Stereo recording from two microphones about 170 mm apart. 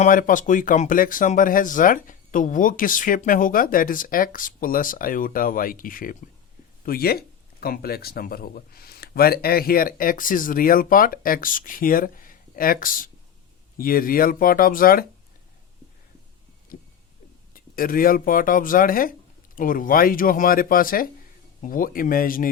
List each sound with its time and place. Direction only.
0.0 s speech: 50° left (ahead or behind)
16.7 s vehicle: 55° left (ahead or behind)
17.5 s speech: 55° left (ahead or behind)